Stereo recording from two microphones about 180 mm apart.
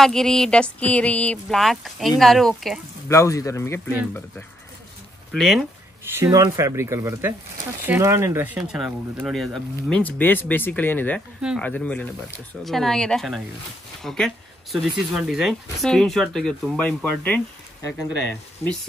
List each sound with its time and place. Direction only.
0.0 s speech: centre (ahead or behind)
3.1 s a man's voice: 15° left (ahead or behind)
5.3 s speech: centre (ahead or behind)
6.1 s a man's voice: 15° right (ahead or behind); by 17.4 s 10° left (ahead or behind)